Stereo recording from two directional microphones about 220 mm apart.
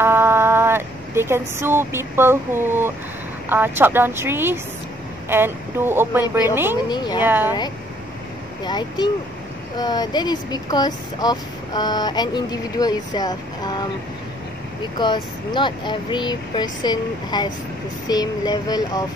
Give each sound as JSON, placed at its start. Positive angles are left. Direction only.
{"t": 0.0, "sound": "speech", "side_deg": -10}
{"t": 6.9, "sound": "speech", "side_deg": 20}
{"t": 7.2, "sound": "speech", "side_deg": -10}
{"t": 8.6, "sound": "speech", "side_deg": 20}